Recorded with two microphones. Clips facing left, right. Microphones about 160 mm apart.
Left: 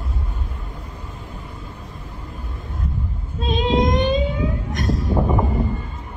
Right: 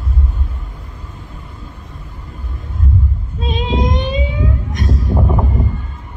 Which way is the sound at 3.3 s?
Centre (ahead or behind).